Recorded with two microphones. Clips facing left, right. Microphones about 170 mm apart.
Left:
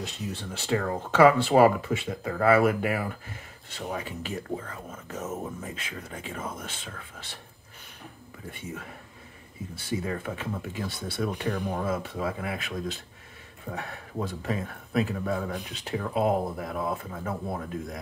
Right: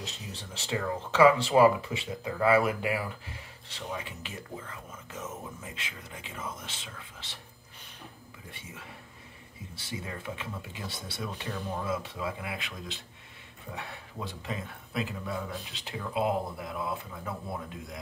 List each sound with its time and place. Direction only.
0.0 s speech: 55° left (ahead or behind)
9.8 s speech: 50° left (ahead or behind)